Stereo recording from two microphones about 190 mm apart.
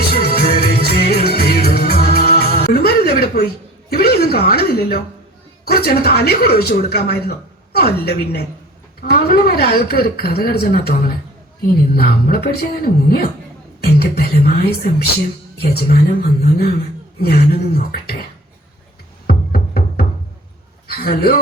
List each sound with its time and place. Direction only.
0.1 s music: 55° left (ahead or behind)
5.6 s speech: 55° left (ahead or behind)
19.3 s music: 55° left (ahead or behind)
20.8 s a man's voice: 55° left (ahead or behind)